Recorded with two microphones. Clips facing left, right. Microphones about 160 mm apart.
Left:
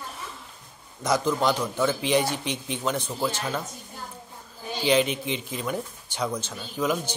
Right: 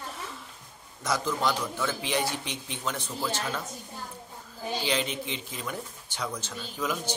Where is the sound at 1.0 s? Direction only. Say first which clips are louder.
Left 5 dB; 20° left (ahead or behind).